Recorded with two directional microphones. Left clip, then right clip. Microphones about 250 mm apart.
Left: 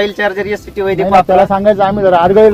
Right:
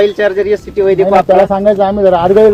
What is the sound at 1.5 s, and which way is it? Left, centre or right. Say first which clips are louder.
Speech: even; left.